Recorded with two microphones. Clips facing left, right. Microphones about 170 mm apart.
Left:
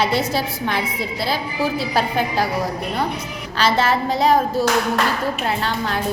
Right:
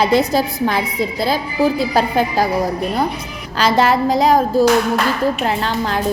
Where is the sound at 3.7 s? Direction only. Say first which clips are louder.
Right 5 dB; 40° right (ahead or behind).